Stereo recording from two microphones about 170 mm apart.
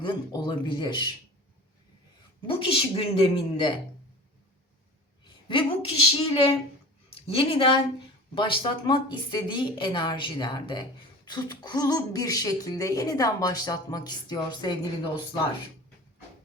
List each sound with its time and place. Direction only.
0.0 s speech: 25° left (ahead or behind)
2.5 s a woman's voice: 30° left (ahead or behind)
5.5 s a woman's voice: 30° left (ahead or behind)